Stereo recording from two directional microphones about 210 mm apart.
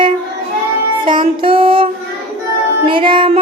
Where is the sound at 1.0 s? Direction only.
25° right (ahead or behind).